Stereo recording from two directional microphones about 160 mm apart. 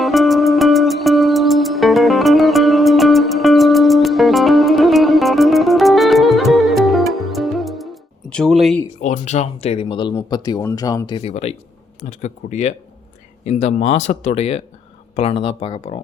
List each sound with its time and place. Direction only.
0.0 s music: centre (ahead or behind)
8.3 s speech: 5° left (ahead or behind)
9.0 s speech: 45° left (ahead or behind); by 11.2 s 25° left (ahead or behind)
11.2 s speech: 40° left (ahead or behind)